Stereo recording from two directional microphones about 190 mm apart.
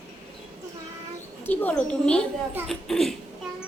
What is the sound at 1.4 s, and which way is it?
A woman's voice, 10° left (ahead or behind).